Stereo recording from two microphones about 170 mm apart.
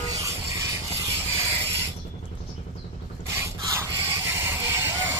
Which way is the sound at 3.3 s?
15° right (ahead or behind).